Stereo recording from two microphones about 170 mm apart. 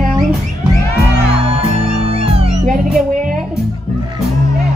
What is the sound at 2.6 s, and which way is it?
Music, 50° right (ahead or behind).